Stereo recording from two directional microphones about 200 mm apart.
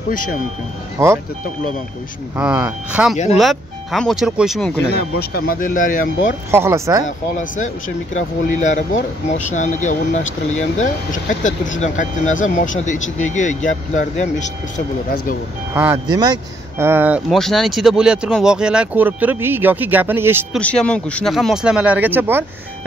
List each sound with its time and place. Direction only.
0.9 s speech: 15° right (ahead or behind)
2.3 s speech: 5° right (ahead or behind)
5.3 s speech: 45° left (ahead or behind)
6.5 s speech: 15° right (ahead or behind)
8.1 s speech: 35° left (ahead or behind)
15.7 s speech: 10° right (ahead or behind)
16.1 s speech: 20° right (ahead or behind)
20.5 s speech: 5° left (ahead or behind)